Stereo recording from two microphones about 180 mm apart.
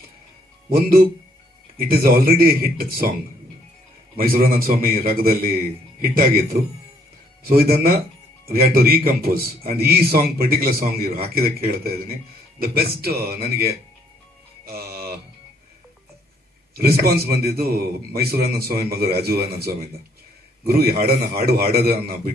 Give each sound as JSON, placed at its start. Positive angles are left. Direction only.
{"t": 0.7, "sound": "a man's voice", "side_deg": -55}
{"t": 4.2, "sound": "a man's voice", "side_deg": -55}
{"t": 14.6, "sound": "music", "side_deg": -60}
{"t": 16.7, "sound": "a man's voice", "side_deg": -60}